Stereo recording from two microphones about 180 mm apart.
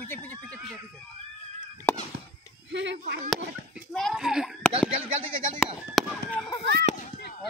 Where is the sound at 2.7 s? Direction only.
80° right.